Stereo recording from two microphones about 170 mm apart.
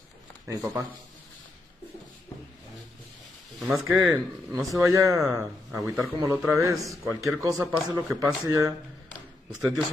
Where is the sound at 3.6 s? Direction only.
Centre (ahead or behind).